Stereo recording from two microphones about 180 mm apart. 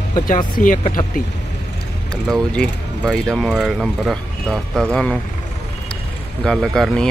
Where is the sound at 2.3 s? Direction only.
5° left (ahead or behind).